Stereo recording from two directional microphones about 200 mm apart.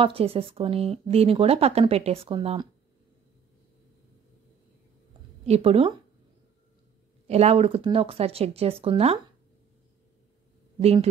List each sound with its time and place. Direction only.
0.0 s speech: 30° right (ahead or behind)
5.5 s speech: 30° right (ahead or behind)
7.2 s speech: 30° right (ahead or behind)
10.8 s speech: 30° right (ahead or behind)